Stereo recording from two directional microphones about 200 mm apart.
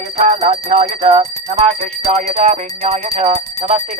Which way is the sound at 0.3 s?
30° right (ahead or behind).